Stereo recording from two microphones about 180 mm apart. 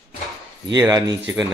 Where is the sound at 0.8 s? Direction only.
20° right (ahead or behind).